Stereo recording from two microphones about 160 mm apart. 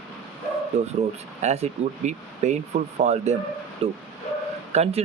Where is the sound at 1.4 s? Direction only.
45° right (ahead or behind).